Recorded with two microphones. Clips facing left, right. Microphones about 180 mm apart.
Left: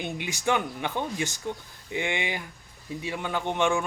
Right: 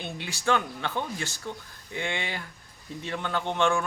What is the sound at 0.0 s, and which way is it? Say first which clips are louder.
A man's voice: left 2 dB; 15° left (ahead or behind).